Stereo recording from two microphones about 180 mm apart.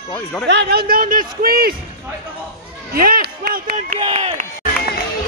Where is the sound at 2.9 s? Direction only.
55° right (ahead or behind).